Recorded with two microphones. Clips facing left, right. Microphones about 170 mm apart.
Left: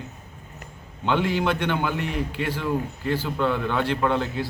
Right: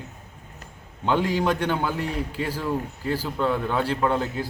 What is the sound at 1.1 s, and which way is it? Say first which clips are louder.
A man's voice: even; 40° right (ahead or behind).